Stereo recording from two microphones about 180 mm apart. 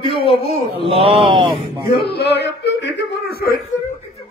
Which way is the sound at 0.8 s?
30° right (ahead or behind).